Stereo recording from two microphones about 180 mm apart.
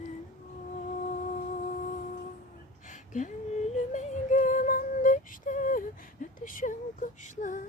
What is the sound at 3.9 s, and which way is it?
Female singing, 45° left (ahead or behind).